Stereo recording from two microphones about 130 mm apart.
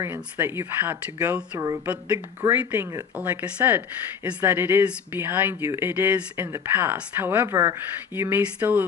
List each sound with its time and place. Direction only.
0.0 s speech: 20° right (ahead or behind)